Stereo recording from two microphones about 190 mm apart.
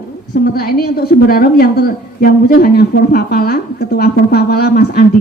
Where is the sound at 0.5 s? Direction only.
55° left (ahead or behind).